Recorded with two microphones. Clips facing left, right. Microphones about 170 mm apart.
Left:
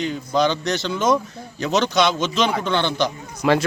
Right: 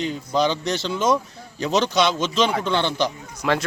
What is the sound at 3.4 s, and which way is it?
Speech, 5° left (ahead or behind).